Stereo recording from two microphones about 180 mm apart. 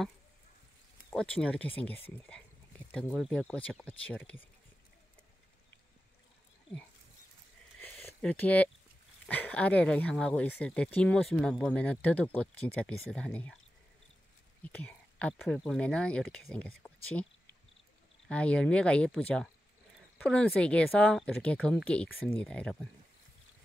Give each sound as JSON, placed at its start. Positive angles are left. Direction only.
{"t": 1.1, "sound": "speech", "side_deg": 5}
{"t": 7.8, "sound": "a sound", "side_deg": 10}
{"t": 9.2, "sound": "speech", "side_deg": 10}
{"t": 14.6, "sound": "speech", "side_deg": 10}
{"t": 16.8, "sound": "a sound", "side_deg": 5}
{"t": 18.3, "sound": "speech", "side_deg": 5}